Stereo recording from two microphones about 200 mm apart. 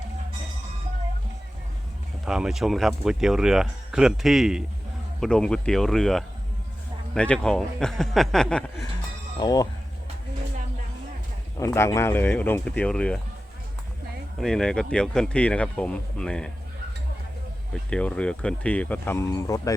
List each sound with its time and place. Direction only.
2.2 s speech: centre (ahead or behind)
9.4 s speech: 20° left (ahead or behind)
11.6 s speech: 15° left (ahead or behind)
14.3 s speech: 5° left (ahead or behind)
17.9 s speech: 5° left (ahead or behind)